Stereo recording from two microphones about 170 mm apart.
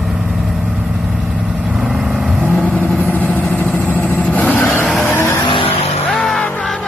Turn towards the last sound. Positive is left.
turn(degrees=5)  # may be behind; listen again after turning